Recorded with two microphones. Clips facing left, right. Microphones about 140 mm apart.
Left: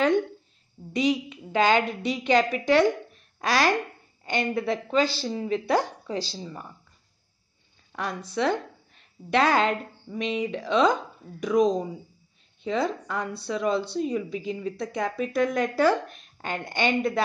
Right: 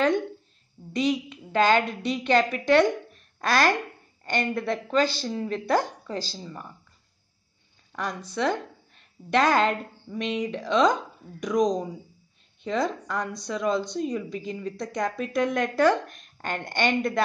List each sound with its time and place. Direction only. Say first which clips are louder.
0.9 s a woman's voice: left 1 dB; 10° left (ahead or behind)
7.9 s a woman's voice: left 1 dB; 10° left (ahead or behind)